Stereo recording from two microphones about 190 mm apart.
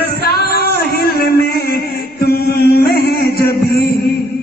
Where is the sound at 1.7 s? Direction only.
55° left (ahead or behind).